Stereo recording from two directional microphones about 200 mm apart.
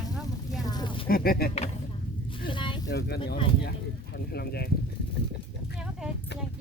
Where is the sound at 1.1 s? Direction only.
50° left (ahead or behind).